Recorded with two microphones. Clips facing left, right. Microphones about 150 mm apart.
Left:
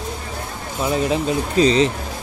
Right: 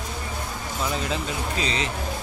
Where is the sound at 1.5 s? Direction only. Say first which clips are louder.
Left 15 dB; 35° left (ahead or behind).